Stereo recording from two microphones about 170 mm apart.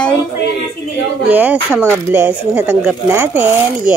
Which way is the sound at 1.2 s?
10° right (ahead or behind).